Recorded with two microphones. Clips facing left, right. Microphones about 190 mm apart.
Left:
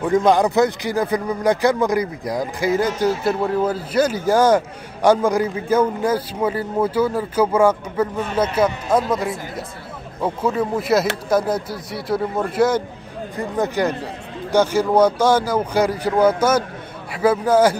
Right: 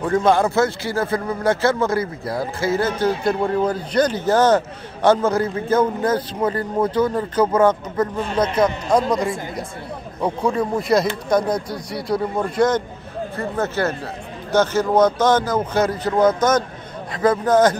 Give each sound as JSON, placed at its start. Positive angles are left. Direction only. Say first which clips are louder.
{"t": 0.0, "sound": "speech", "louder": "left 1 dB", "side_deg": 15}